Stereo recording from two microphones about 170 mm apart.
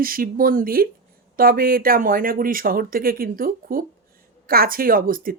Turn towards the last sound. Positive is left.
turn(degrees=-55)  # may be behind; listen again after turning